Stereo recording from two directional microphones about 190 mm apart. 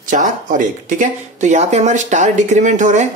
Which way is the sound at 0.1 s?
40° right (ahead or behind).